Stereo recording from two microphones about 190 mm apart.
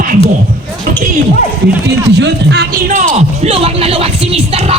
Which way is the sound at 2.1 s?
65° right (ahead or behind).